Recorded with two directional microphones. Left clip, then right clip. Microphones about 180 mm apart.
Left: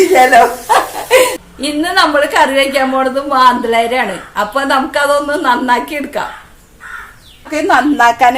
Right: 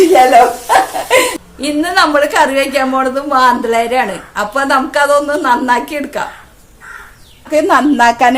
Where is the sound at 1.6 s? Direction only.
5° right (ahead or behind).